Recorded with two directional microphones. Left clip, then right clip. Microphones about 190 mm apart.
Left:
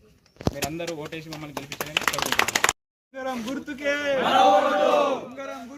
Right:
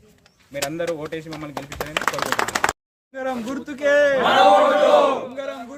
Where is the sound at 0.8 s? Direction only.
45° right (ahead or behind).